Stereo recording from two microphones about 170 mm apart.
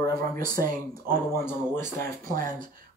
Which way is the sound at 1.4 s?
15° left (ahead or behind).